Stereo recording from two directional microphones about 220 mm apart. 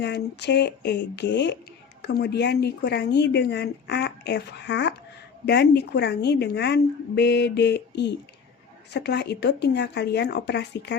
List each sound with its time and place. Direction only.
0.0 s speech: 50° left (ahead or behind)